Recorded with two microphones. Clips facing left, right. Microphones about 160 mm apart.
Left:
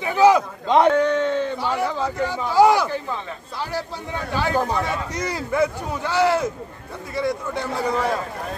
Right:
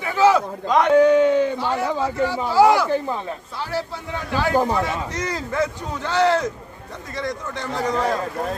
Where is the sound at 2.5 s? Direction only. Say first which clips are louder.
Even; 15° left (ahead or behind).